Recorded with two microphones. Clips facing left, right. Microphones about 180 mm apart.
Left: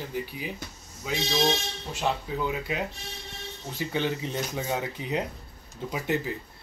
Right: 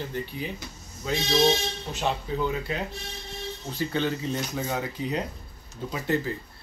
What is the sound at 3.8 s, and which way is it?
Speech, 15° left (ahead or behind).